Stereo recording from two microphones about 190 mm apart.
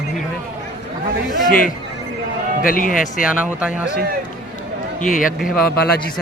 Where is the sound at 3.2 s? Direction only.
5° right (ahead or behind).